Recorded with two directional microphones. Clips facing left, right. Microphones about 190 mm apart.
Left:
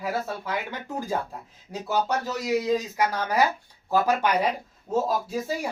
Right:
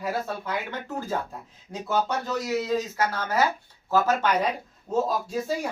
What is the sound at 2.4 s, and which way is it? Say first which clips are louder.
A woman's voice: left 4 dB; 15° left (ahead or behind).